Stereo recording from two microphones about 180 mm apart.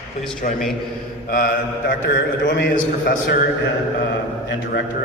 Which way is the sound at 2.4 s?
75° left (ahead or behind).